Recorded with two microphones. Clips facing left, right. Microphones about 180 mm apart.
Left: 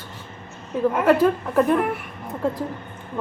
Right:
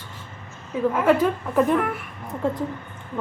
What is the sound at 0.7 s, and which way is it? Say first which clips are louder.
Speech: left 1 dB; centre (ahead or behind).